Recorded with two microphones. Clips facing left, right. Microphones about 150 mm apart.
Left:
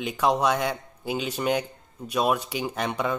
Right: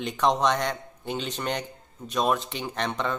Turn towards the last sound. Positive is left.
turn(degrees=10)  # may be behind; listen again after turning